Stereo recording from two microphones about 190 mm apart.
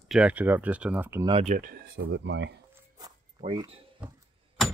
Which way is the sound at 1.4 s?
45° right (ahead or behind).